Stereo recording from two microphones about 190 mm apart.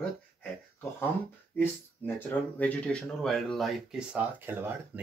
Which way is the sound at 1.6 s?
10° left (ahead or behind).